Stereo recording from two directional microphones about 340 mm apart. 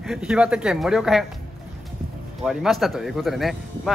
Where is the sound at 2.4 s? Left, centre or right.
Centre.